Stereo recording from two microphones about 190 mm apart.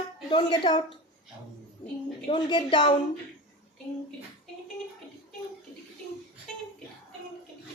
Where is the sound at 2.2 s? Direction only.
25° left (ahead or behind).